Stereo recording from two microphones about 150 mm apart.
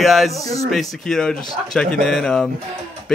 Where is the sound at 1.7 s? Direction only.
5° left (ahead or behind).